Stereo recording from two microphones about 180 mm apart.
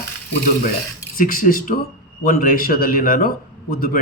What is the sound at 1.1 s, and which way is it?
A man's voice, 50° left (ahead or behind).